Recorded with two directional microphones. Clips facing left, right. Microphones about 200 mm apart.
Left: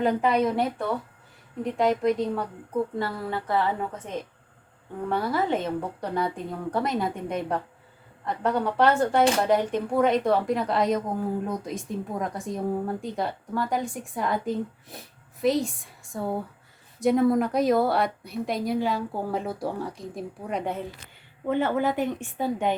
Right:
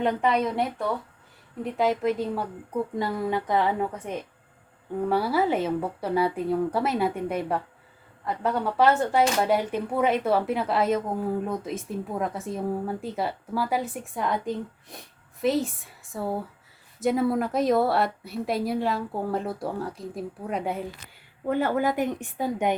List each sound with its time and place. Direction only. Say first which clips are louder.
0.0 s speech: left 1 dB; centre (ahead or behind)
3.0 s a woman's voice: right 3 dB; 15° right (ahead or behind)